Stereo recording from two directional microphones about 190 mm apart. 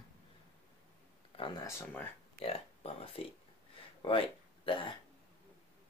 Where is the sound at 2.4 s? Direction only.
30° left (ahead or behind).